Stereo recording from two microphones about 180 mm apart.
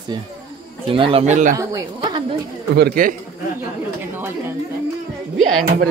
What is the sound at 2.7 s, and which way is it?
Speech, 55° right (ahead or behind).